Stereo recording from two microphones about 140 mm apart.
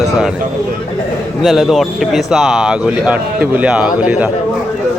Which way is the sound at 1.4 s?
Centre (ahead or behind).